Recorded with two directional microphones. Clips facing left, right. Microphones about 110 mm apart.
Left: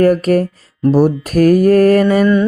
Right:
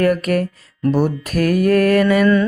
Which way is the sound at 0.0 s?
35° left (ahead or behind).